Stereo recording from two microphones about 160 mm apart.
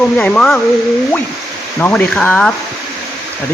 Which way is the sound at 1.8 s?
10° left (ahead or behind).